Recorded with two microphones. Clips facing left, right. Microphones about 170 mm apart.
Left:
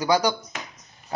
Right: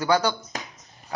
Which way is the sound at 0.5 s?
40° right (ahead or behind).